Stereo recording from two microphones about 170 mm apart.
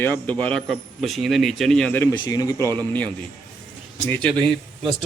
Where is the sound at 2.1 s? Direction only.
25° left (ahead or behind).